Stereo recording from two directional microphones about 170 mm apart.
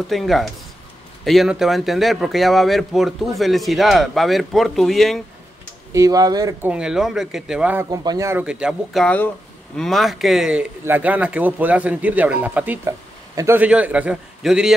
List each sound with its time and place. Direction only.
0.1 s speech: centre (ahead or behind)
5.9 s speech: 20° right (ahead or behind)
6.7 s speech: 5° right (ahead or behind)
7.9 s a man's voice: 20° right (ahead or behind); by 14.7 s 5° right (ahead or behind)